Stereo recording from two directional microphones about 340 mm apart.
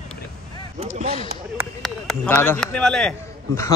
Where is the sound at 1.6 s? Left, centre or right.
Centre.